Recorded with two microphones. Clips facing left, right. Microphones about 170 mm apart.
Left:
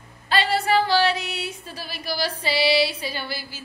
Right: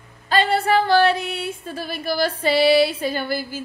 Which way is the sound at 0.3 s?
50° right (ahead or behind).